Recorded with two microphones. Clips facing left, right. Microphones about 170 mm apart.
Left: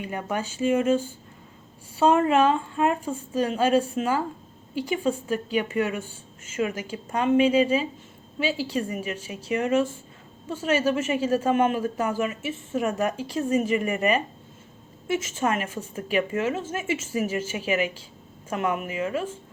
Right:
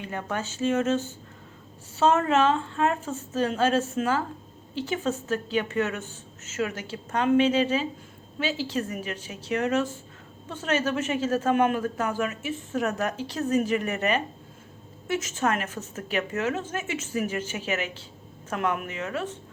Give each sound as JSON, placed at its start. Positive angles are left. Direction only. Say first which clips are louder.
{"t": 0.0, "sound": "a woman's voice", "louder": "left 2 dB", "side_deg": 10}